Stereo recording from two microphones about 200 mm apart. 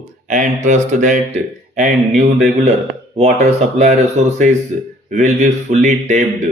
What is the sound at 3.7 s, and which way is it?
Speech, 35° right (ahead or behind).